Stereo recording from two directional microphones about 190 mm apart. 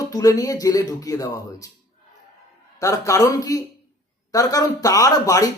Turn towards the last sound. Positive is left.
turn(degrees=20)  # may be behind; listen again after turning